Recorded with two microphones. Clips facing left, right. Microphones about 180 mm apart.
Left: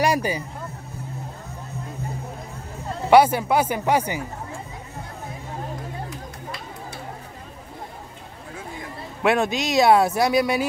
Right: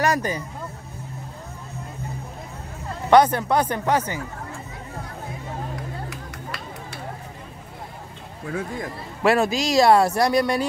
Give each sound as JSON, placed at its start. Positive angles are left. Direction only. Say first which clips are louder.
{"t": 0.0, "sound": "speech", "louder": "left 1 dB", "side_deg": 10}
{"t": 3.1, "sound": "speech", "louder": "left 1 dB", "side_deg": 10}
{"t": 6.0, "sound": "a sound", "louder": "even", "side_deg": -70}
{"t": 9.2, "sound": "speech", "louder": "right 1 dB", "side_deg": 0}